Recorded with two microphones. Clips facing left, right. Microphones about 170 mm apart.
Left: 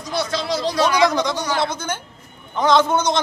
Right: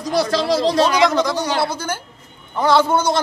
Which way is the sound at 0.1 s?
35° right (ahead or behind).